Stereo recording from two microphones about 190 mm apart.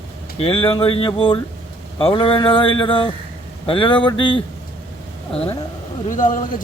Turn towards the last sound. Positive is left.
turn(degrees=45)  # may be behind; listen again after turning